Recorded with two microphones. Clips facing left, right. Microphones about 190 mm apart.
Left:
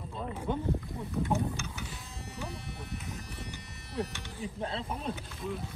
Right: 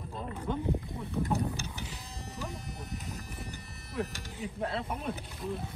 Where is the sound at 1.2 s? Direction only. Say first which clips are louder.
Left 1 dB; 35° right (ahead or behind).